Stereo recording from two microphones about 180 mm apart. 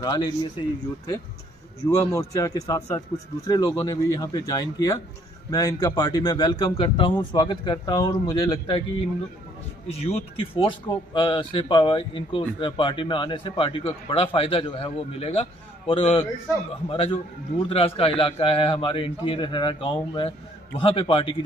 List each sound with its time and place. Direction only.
0.0 s speech: 20° left (ahead or behind)
1.9 s speech: 20° left (ahead or behind)
9.9 s a man's voice: 35° left (ahead or behind)